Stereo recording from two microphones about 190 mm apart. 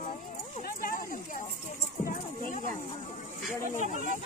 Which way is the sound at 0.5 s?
50° left (ahead or behind).